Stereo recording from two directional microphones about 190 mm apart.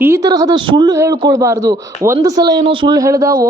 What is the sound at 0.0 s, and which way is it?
A man's voice, 15° right (ahead or behind).